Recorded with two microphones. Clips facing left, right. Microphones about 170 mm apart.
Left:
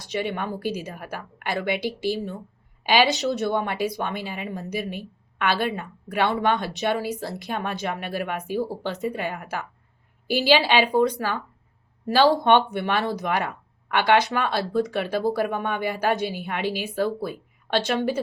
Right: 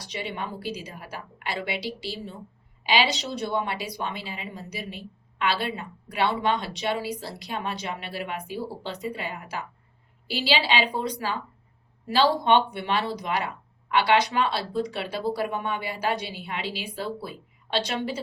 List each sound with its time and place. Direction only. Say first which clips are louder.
0.0 s a woman's voice: left 6 dB; 50° left (ahead or behind)